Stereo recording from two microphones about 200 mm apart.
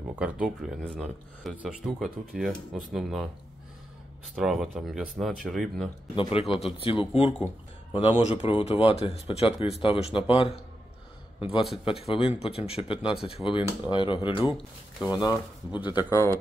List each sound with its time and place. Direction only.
0.1 s speech: 5° right (ahead or behind)
4.4 s speech: centre (ahead or behind)
6.5 s a man's voice: 25° left (ahead or behind)